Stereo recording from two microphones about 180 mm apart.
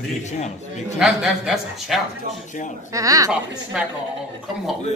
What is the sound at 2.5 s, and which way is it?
Speech, 45° left (ahead or behind).